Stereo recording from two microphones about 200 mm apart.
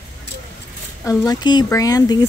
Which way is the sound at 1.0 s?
15° left (ahead or behind).